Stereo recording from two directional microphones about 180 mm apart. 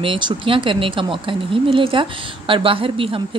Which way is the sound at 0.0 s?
30° right (ahead or behind).